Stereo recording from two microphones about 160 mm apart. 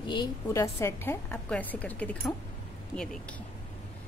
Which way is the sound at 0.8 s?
15° left (ahead or behind).